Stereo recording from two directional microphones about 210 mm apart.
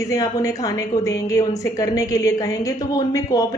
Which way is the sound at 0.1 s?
15° left (ahead or behind).